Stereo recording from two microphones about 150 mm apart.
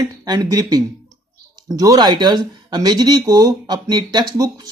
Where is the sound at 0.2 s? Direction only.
25° right (ahead or behind).